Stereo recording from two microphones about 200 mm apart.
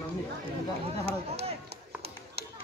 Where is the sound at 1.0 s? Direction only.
30° right (ahead or behind).